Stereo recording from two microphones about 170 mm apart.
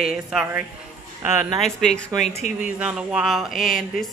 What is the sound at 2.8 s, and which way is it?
Speech, 5° right (ahead or behind).